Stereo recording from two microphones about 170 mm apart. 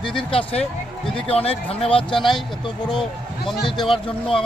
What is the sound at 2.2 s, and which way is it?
Speech, centre (ahead or behind).